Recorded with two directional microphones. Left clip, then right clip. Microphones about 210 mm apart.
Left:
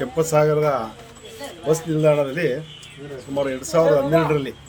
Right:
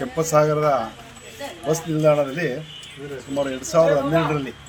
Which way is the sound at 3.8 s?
30° left (ahead or behind).